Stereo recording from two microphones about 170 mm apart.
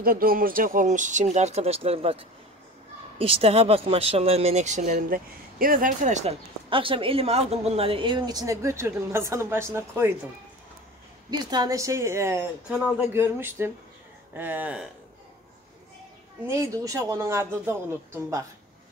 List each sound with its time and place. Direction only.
0.0 s speech: 60° right (ahead or behind)
4.9 s speech: 55° right (ahead or behind)
6.7 s speech: 30° right (ahead or behind); by 10.1 s 15° right (ahead or behind)
11.2 s speech: 25° right (ahead or behind); by 14.9 s 10° right (ahead or behind)
16.4 s speech: 20° right (ahead or behind)